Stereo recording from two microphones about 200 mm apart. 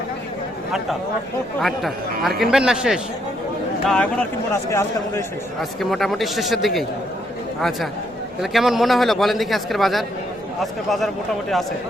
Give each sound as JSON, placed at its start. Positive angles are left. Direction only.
{"t": 1.6, "sound": "a man's voice", "side_deg": 0}
{"t": 5.5, "sound": "a man's voice", "side_deg": 0}
{"t": 8.4, "sound": "a man's voice", "side_deg": 0}